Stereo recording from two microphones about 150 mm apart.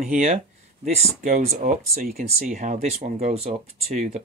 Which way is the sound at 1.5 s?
80° right.